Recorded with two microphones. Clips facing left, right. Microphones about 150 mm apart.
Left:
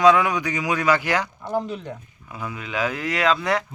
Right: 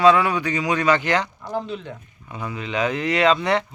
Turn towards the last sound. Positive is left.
turn(degrees=0)  # may be behind; listen again after turning